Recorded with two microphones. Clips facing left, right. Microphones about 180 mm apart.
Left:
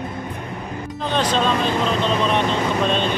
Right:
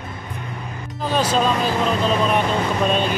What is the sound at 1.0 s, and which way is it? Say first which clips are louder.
Speech: right 1 dB; 5° right (ahead or behind).